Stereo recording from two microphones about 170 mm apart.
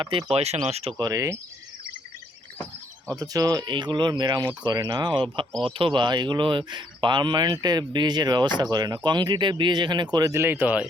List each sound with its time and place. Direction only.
0.0 s speech: 30° right (ahead or behind)
1.0 s speech: 20° right (ahead or behind)
3.2 s speech: 20° right (ahead or behind)